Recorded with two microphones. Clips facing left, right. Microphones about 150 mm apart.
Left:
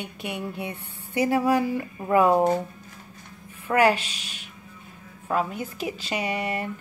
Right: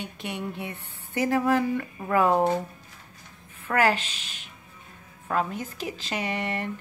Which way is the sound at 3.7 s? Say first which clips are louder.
Left 3 dB; 15° left (ahead or behind).